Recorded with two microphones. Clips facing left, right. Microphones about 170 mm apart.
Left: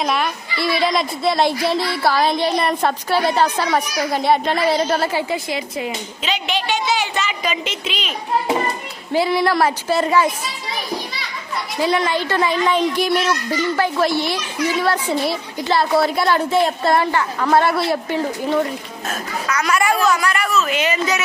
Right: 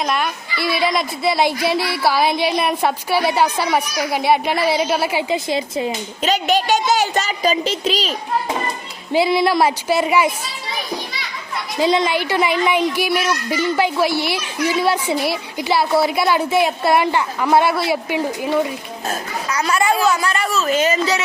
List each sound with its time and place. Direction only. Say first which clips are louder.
0.0 s a woman's voice: even; centre (ahead or behind)
5.5 s speech: right 4 dB; 25° right (ahead or behind)
6.2 s a woman's voice: right 6 dB; 45° right (ahead or behind)
9.1 s a woman's voice: right 1 dB; 15° right (ahead or behind)
11.8 s a woman's voice: right 2 dB; 20° right (ahead or behind)
19.0 s speech: even; 30° right (ahead or behind)